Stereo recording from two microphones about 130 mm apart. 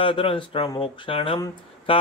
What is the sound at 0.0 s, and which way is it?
Speech, 45° left (ahead or behind).